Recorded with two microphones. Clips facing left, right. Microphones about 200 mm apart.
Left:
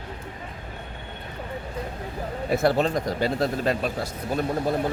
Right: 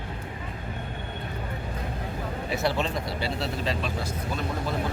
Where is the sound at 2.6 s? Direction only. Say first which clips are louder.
Left 6 dB; 45° left (ahead or behind).